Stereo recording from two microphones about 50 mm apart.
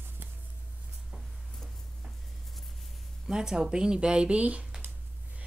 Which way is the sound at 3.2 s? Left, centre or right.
Centre.